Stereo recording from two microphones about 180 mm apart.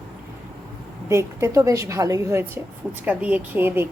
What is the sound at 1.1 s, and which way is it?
A woman's voice, 15° right (ahead or behind).